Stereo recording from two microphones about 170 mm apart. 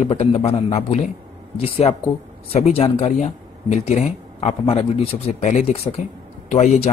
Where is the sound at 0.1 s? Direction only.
40° left (ahead or behind).